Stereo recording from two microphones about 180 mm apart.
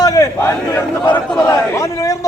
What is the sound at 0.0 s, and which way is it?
A man's voice, 20° left (ahead or behind).